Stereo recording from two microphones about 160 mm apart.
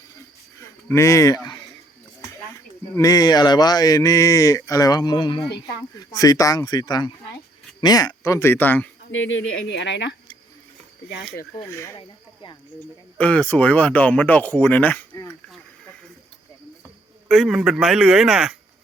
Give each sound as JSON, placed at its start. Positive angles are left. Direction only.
{"t": 0.6, "sound": "speech", "side_deg": 20}
{"t": 2.9, "sound": "speech", "side_deg": 20}
{"t": 9.6, "sound": "speech", "side_deg": 90}
{"t": 11.5, "sound": "speech", "side_deg": 15}
{"t": 11.9, "sound": "speech", "side_deg": 30}
{"t": 13.1, "sound": "speech", "side_deg": 10}
{"t": 16.8, "sound": "speech", "side_deg": 0}